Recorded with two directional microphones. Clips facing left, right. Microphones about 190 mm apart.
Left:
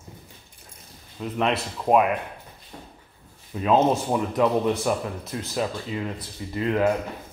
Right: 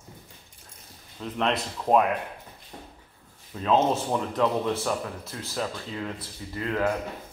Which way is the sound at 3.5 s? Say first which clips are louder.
Left 3 dB; 10° left (ahead or behind).